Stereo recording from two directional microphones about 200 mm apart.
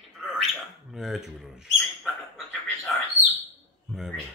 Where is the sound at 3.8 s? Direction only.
Centre (ahead or behind).